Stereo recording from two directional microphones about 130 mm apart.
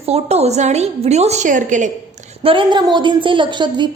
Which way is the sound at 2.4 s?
40° right (ahead or behind).